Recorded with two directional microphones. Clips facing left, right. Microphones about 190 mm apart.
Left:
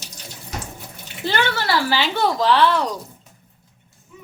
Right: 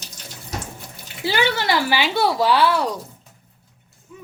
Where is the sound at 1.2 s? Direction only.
10° right (ahead or behind).